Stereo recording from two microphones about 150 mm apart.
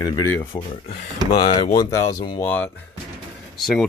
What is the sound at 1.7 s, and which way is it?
Speech, 25° left (ahead or behind).